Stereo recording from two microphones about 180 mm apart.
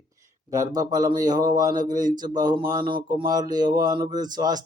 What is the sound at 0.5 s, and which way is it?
A man's voice, 20° right (ahead or behind).